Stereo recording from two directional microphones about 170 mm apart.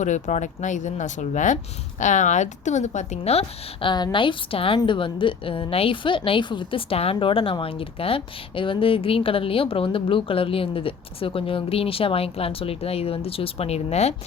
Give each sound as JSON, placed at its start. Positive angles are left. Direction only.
{"t": 0.0, "sound": "a woman's voice", "side_deg": 45}